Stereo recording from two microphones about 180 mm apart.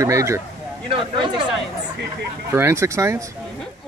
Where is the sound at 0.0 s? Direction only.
15° right (ahead or behind).